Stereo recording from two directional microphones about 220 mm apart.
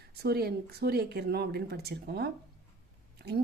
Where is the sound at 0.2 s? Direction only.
45° right (ahead or behind).